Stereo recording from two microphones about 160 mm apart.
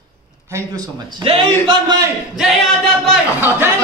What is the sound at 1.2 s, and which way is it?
Speech, 30° right (ahead or behind).